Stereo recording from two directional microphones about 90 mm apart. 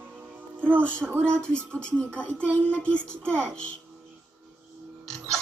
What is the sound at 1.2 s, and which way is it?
Speech, 10° left (ahead or behind).